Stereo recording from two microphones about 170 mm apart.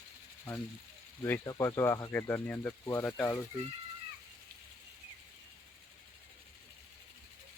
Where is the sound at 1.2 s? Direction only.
20° left (ahead or behind).